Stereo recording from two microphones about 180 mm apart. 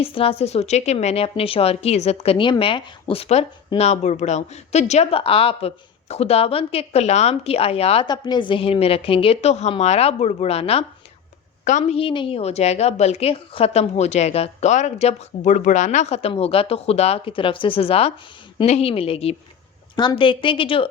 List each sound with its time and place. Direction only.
0.0 s a woman's voice: 30° left (ahead or behind)